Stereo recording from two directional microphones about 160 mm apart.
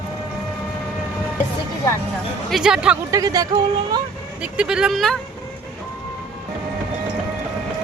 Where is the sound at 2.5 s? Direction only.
5° right (ahead or behind).